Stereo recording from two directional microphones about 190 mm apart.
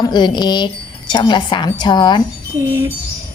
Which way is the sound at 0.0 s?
25° left (ahead or behind).